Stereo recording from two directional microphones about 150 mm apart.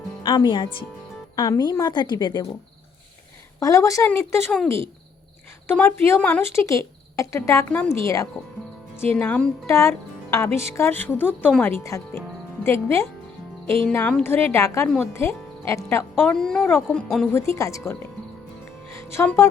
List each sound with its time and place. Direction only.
0.2 s a woman's voice: 30° left (ahead or behind)
3.6 s a woman's voice: 20° left (ahead or behind)
5.6 s speech: 15° left (ahead or behind)
16.2 s speech: 5° left (ahead or behind)
17.3 s a woman's voice: 20° left (ahead or behind)